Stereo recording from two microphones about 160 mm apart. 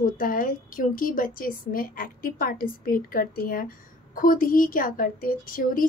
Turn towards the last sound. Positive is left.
turn(degrees=60)  # may be behind; listen again after turning